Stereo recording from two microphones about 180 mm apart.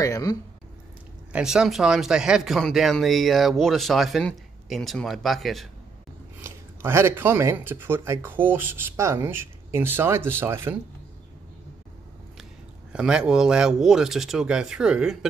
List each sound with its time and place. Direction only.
0.0 s speech: 20° left (ahead or behind)
1.3 s speech: 5° right (ahead or behind)
6.4 s speech: 15° right (ahead or behind)
12.9 s speech: 5° right (ahead or behind)